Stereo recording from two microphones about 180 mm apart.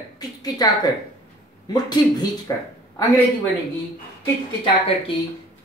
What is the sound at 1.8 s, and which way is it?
Speech, 25° left (ahead or behind).